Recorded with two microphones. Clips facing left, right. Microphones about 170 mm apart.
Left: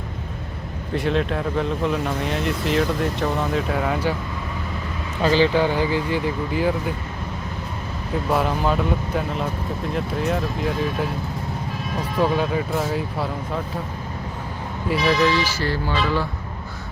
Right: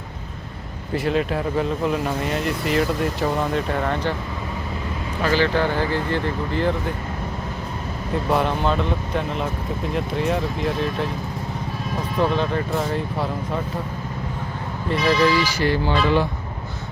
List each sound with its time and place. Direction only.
0.9 s speech: centre (ahead or behind)
5.2 s speech: 20° left (ahead or behind)
8.3 s speech: centre (ahead or behind)
12.2 s speech: 5° left (ahead or behind)
14.8 s speech: centre (ahead or behind)
15.4 s speech: 15° right (ahead or behind)